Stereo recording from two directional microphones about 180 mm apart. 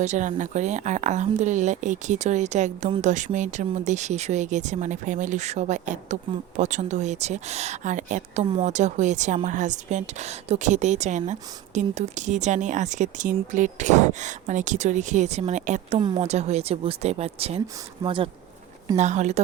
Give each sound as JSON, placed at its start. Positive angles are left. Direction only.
{"t": 0.0, "sound": "speech", "side_deg": -40}
{"t": 16.0, "sound": "speech", "side_deg": -25}
{"t": 18.9, "sound": "speech", "side_deg": -40}